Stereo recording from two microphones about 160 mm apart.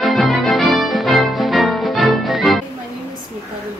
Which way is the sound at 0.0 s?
Centre (ahead or behind).